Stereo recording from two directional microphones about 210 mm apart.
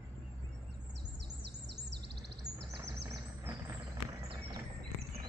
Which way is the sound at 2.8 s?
15° right (ahead or behind).